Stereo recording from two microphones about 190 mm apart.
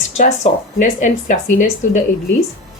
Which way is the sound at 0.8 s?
40° left (ahead or behind).